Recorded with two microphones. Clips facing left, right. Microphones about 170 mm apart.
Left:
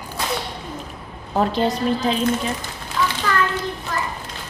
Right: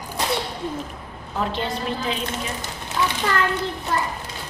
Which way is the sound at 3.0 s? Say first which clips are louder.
Left 1 dB; 20° right (ahead or behind).